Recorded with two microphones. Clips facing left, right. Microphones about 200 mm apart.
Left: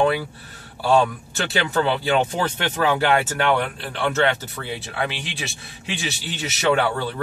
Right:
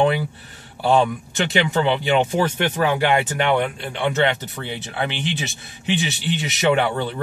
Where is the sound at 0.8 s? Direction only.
20° right (ahead or behind).